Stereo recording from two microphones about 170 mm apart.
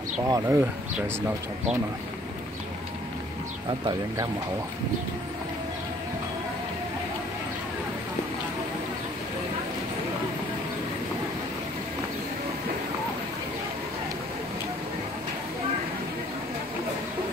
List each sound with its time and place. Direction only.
0.3 s speech: 20° right (ahead or behind)